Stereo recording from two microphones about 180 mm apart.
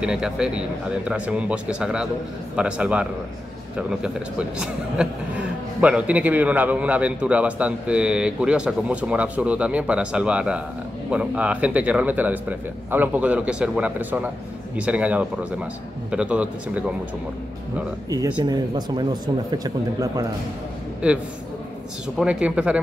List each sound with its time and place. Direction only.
0.0 s a man's voice: 5° right (ahead or behind)
18.4 s speech: 25° right (ahead or behind)
21.0 s a man's voice: 5° right (ahead or behind)
22.2 s speech: 5° right (ahead or behind)